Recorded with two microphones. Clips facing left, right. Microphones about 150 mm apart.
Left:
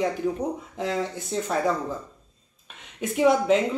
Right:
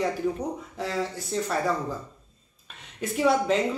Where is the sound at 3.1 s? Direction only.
15° left (ahead or behind).